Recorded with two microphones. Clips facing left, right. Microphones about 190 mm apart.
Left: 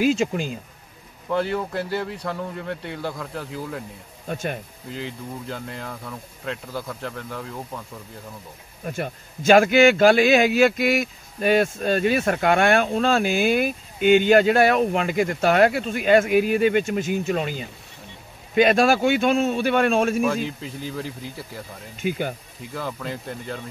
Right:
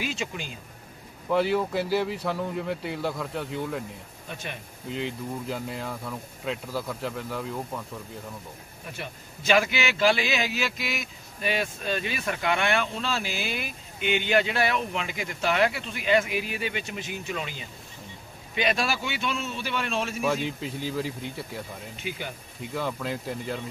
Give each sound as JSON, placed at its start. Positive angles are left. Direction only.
{"t": 0.0, "sound": "a man's voice", "side_deg": 45}
{"t": 1.3, "sound": "speech", "side_deg": 0}
{"t": 4.3, "sound": "a man's voice", "side_deg": 45}
{"t": 4.8, "sound": "speech", "side_deg": 0}
{"t": 8.8, "sound": "a man's voice", "side_deg": 50}
{"t": 20.2, "sound": "speech", "side_deg": 0}
{"t": 22.0, "sound": "a man's voice", "side_deg": 50}
{"t": 22.6, "sound": "speech", "side_deg": 0}